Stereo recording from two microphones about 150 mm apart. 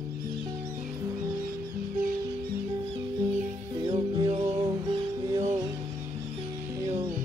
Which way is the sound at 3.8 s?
30° right (ahead or behind).